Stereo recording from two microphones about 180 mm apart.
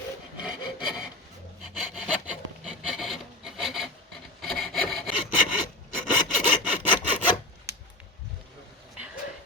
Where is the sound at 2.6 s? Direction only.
Centre (ahead or behind).